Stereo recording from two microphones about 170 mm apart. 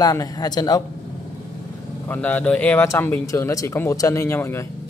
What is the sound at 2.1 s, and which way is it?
Speech, 10° left (ahead or behind).